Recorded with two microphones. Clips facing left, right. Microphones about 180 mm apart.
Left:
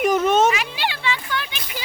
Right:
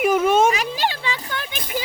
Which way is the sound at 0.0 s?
5° right (ahead or behind).